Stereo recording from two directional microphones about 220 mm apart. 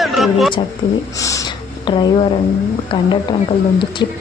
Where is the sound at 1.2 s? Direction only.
15° left (ahead or behind).